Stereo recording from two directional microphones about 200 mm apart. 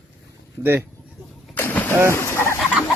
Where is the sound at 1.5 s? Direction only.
10° left (ahead or behind).